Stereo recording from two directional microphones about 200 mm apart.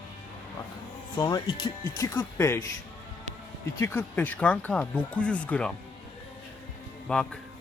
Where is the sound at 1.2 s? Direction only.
20° left (ahead or behind).